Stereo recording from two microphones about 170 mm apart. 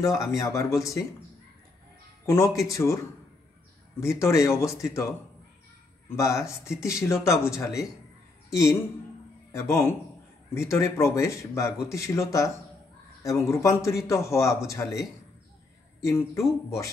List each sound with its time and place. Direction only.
0.1 s speech: 20° left (ahead or behind)
2.2 s a man's voice: 20° left (ahead or behind)
6.0 s a man's voice: 15° left (ahead or behind)
16.1 s a man's voice: 15° left (ahead or behind)